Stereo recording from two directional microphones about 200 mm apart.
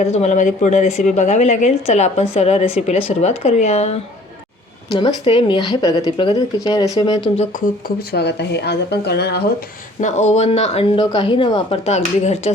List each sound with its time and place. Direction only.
0.0 s a woman's voice: 35° left (ahead or behind)
7.3 s speech: 45° left (ahead or behind)
10.0 s a woman's voice: 35° left (ahead or behind)